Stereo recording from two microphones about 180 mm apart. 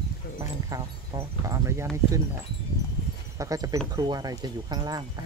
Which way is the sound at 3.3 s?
20° right (ahead or behind).